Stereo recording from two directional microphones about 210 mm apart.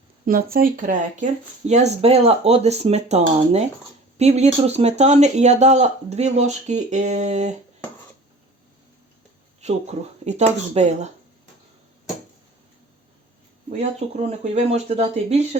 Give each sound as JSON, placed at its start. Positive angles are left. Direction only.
{"t": 0.3, "sound": "speech", "side_deg": -45}
{"t": 9.6, "sound": "speech", "side_deg": -30}
{"t": 13.7, "sound": "speech", "side_deg": -30}